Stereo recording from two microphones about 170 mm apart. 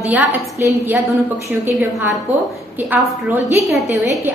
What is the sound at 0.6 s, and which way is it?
A woman's voice, 15° right (ahead or behind).